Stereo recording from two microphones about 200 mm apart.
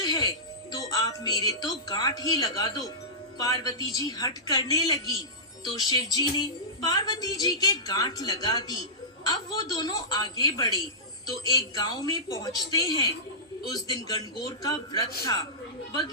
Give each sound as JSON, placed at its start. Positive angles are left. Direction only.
{"t": 0.0, "sound": "a woman's voice", "side_deg": 20}